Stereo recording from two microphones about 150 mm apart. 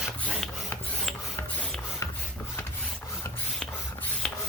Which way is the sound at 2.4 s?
15° left (ahead or behind).